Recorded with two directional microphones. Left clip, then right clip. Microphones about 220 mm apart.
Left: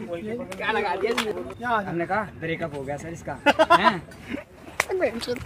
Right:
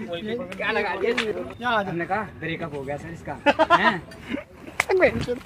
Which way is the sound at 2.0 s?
15° left (ahead or behind).